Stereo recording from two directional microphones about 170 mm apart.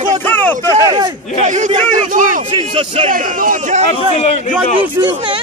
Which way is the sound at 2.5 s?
30° right (ahead or behind).